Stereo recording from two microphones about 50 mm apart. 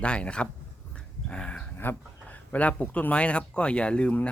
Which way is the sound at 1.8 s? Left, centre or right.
Left.